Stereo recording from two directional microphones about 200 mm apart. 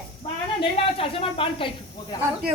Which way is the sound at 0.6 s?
25° left (ahead or behind).